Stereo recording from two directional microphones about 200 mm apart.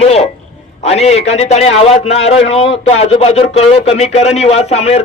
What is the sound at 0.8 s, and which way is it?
A man's voice, 30° left (ahead or behind).